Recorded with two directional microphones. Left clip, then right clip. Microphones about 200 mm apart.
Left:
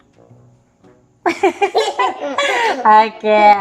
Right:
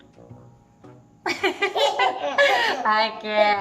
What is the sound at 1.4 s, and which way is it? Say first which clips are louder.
A woman's voice: left 6 dB; 40° left (ahead or behind).